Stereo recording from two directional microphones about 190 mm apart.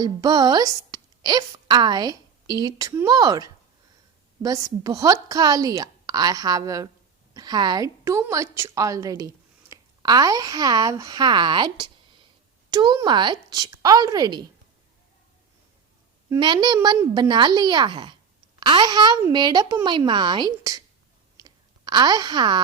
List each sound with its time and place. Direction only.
0.0 s a woman's voice: 20° right (ahead or behind)
16.3 s a woman's voice: 20° right (ahead or behind)
21.3 s clicking: 20° right (ahead or behind)